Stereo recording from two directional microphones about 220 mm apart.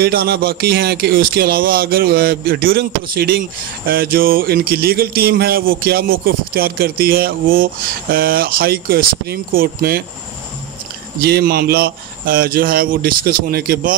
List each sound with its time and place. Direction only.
0.0 s speech: 45° right (ahead or behind)
11.1 s speech: 45° right (ahead or behind)